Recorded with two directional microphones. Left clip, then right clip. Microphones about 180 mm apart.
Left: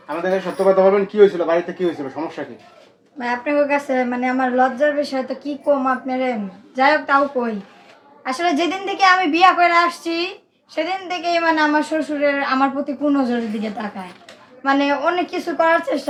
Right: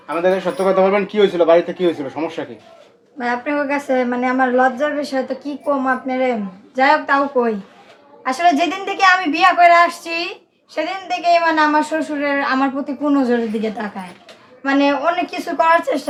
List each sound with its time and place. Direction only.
0.1 s speech: 30° right (ahead or behind)
3.2 s a man's voice: 10° right (ahead or behind)